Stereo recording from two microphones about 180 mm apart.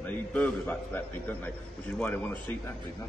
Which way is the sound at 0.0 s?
10° left (ahead or behind).